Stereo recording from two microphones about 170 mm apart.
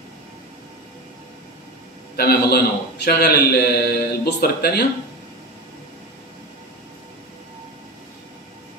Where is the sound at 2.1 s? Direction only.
70° left (ahead or behind).